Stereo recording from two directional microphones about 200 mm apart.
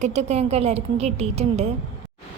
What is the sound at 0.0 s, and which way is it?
A woman's voice, 35° right (ahead or behind).